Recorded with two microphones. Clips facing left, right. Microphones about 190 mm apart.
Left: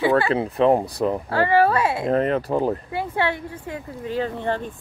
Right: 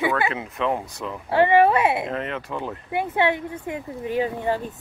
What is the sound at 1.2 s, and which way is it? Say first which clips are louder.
Speech: right 4 dB; 20° right (ahead or behind).